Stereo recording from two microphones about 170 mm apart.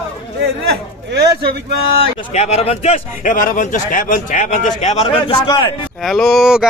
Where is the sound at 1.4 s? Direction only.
70° right (ahead or behind).